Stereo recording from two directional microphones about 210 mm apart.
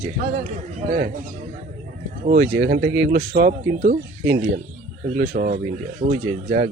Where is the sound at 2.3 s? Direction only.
50° right (ahead or behind).